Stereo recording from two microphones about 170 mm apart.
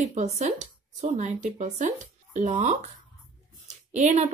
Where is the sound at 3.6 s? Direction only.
45° right (ahead or behind).